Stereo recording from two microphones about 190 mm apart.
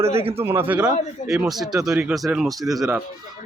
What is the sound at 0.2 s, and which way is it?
Speech, 30° right (ahead or behind).